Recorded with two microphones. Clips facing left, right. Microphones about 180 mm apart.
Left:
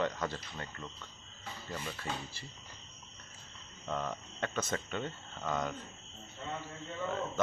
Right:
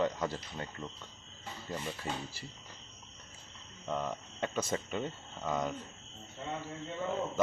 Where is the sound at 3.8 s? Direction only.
10° right (ahead or behind).